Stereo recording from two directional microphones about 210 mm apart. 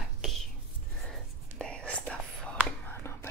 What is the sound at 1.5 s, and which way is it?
Whispering, 5° left (ahead or behind).